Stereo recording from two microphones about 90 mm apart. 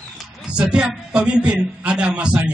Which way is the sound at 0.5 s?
10° right (ahead or behind).